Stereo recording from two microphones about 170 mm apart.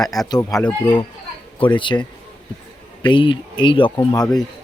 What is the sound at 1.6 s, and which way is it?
Speech, 30° left (ahead or behind).